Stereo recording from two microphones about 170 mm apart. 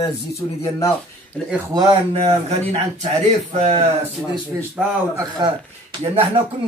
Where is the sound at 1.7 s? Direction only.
30° right (ahead or behind).